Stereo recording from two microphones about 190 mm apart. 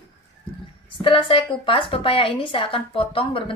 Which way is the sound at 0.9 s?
25° left (ahead or behind).